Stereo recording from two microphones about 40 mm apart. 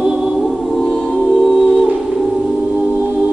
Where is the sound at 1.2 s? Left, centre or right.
Centre.